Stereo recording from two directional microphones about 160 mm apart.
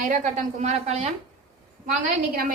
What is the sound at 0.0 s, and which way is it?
A woman's voice, 50° right (ahead or behind).